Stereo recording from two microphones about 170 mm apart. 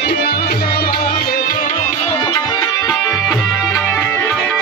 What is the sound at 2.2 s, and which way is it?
Music, 25° left (ahead or behind).